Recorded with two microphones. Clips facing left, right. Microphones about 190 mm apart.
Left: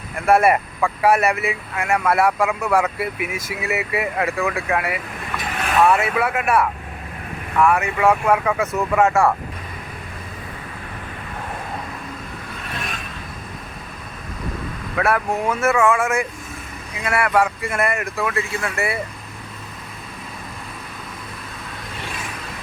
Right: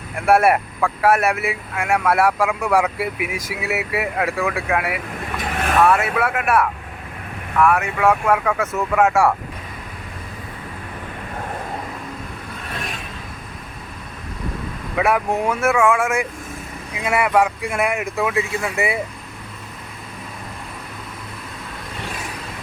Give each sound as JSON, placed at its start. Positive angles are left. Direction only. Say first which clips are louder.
{"t": 0.3, "sound": "speech", "louder": "even", "side_deg": -5}
{"t": 14.9, "sound": "speech", "louder": "right 1 dB", "side_deg": -15}